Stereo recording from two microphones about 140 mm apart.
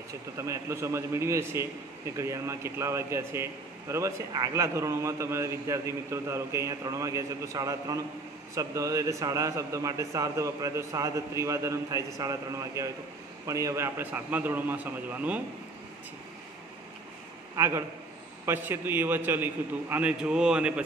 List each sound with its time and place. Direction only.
0.4 s a man's voice: 20° right (ahead or behind)
17.6 s a man's voice: 20° right (ahead or behind)